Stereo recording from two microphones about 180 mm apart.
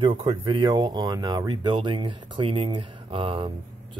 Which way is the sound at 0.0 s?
30° right (ahead or behind).